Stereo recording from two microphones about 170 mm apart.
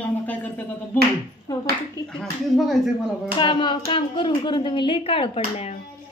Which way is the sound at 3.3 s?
30° left (ahead or behind).